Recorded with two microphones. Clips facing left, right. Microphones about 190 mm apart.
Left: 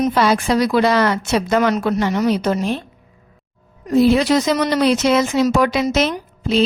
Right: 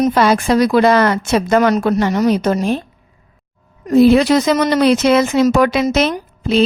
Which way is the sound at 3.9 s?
60° right (ahead or behind).